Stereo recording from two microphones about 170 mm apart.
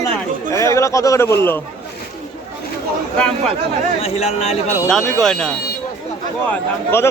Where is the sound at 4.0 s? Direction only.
40° left (ahead or behind).